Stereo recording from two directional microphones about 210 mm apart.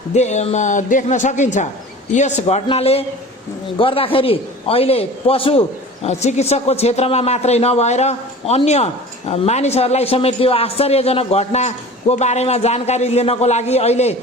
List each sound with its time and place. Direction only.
0.1 s a woman's voice: 30° left (ahead or behind)